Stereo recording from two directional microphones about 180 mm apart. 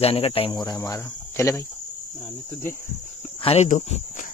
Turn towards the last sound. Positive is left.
turn(degrees=40)  # may be behind; listen again after turning